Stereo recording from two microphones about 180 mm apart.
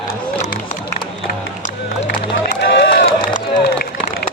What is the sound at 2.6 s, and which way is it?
Run, 70° left (ahead or behind).